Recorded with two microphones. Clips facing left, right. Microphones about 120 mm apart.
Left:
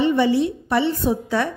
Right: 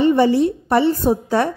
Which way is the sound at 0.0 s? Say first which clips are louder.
Right 4 dB; 40° right (ahead or behind).